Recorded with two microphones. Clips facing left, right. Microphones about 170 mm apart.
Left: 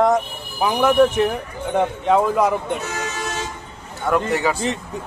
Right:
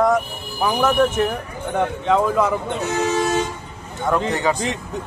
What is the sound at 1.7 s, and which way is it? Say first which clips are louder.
Speech: left 1 dB; 15° left (ahead or behind).